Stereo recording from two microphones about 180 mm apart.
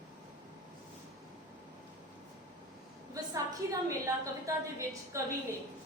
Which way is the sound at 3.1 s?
20° right (ahead or behind).